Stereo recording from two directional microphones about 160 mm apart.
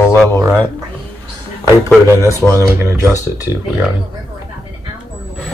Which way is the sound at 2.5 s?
15° right (ahead or behind).